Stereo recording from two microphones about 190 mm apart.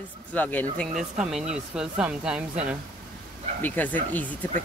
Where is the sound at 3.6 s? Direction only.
10° left (ahead or behind).